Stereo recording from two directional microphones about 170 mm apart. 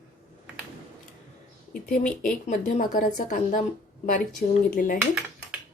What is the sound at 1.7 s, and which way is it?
Speech, 55° left (ahead or behind).